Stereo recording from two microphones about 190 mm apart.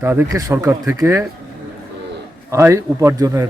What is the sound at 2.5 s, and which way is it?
Speech, 15° right (ahead or behind).